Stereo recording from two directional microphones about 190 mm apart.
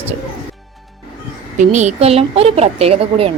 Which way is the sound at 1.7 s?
35° right (ahead or behind).